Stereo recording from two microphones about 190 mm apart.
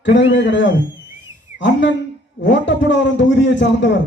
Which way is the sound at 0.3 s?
70° left (ahead or behind).